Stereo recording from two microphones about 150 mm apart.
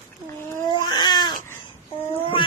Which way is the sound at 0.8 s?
30° left (ahead or behind).